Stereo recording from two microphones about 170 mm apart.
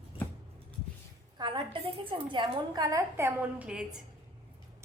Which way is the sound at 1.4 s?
25° right (ahead or behind).